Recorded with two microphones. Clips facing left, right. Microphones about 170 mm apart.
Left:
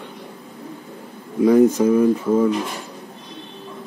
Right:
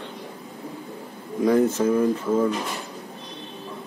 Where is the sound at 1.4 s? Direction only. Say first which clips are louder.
Left 6 dB; 10° left (ahead or behind).